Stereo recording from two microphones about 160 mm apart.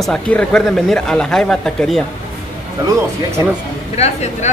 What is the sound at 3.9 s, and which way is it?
Speech, 40° left (ahead or behind).